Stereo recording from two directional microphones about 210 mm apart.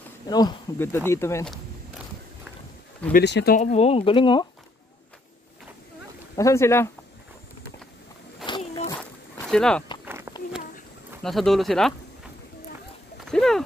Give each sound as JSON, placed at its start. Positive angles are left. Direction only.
{"t": 0.3, "sound": "speech", "side_deg": 20}
{"t": 3.1, "sound": "speech", "side_deg": 50}
{"t": 3.5, "sound": "speech", "side_deg": 30}
{"t": 6.3, "sound": "speech", "side_deg": 15}
{"t": 8.5, "sound": "a sound", "side_deg": 20}
{"t": 9.5, "sound": "speech", "side_deg": 5}
{"t": 10.0, "sound": "a sound", "side_deg": -10}
{"t": 11.2, "sound": "speech", "side_deg": 0}
{"t": 13.2, "sound": "a sound", "side_deg": 0}